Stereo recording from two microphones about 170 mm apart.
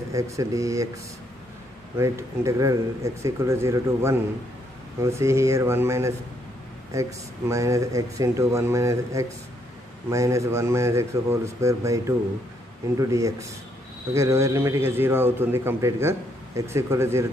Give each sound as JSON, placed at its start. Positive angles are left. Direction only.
{"t": 0.1, "sound": "speech", "side_deg": -20}
{"t": 2.0, "sound": "a man's voice", "side_deg": -20}